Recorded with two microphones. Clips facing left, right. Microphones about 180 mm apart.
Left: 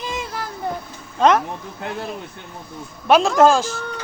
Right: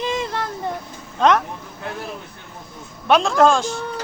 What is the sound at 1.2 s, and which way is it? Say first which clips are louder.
Speech: left 1 dB; centre (ahead or behind).